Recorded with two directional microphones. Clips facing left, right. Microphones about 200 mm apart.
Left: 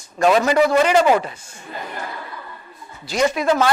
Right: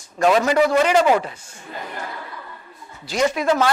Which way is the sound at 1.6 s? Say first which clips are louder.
Left 1 dB; 15° left (ahead or behind).